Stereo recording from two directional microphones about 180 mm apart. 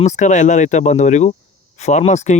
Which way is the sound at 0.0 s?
40° left (ahead or behind).